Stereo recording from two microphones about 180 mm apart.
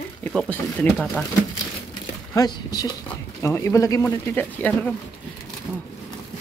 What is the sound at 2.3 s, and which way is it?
Speech, 20° left (ahead or behind).